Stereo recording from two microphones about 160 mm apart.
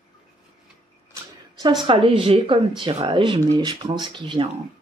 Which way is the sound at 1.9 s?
30° right (ahead or behind).